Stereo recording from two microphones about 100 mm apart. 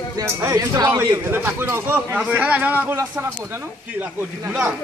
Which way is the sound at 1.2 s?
20° right (ahead or behind).